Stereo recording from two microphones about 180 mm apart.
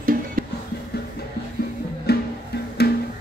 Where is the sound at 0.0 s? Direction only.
50° right (ahead or behind).